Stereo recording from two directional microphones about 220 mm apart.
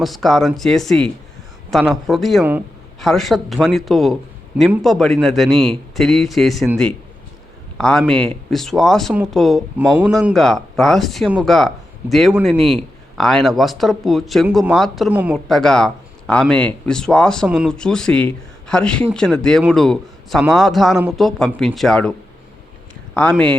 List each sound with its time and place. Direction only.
0.0 s a man's voice: centre (ahead or behind)
12.5 s a man's voice: 25° right (ahead or behind)
13.1 s speech: centre (ahead or behind)
23.1 s speech: 5° left (ahead or behind)